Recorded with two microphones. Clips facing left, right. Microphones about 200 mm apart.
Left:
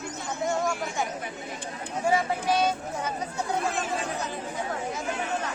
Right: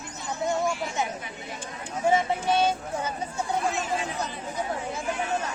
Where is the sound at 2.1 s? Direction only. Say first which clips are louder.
Right 2 dB; 25° right (ahead or behind).